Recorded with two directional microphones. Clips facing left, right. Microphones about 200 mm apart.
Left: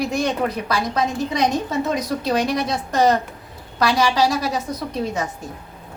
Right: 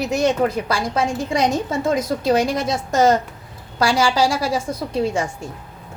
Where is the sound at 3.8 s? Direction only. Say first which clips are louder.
Right 1 dB; 30° right (ahead or behind).